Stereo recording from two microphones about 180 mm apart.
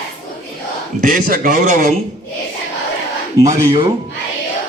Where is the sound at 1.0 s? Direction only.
50° right (ahead or behind).